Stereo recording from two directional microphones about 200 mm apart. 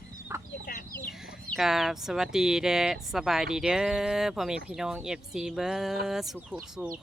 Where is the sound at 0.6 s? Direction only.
45° left (ahead or behind).